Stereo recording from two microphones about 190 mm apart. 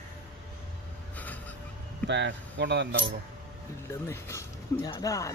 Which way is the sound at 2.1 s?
70° right (ahead or behind).